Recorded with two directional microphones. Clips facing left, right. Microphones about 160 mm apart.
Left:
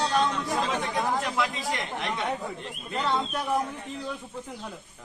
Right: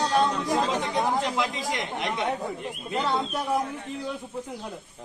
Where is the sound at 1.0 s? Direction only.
20° right (ahead or behind).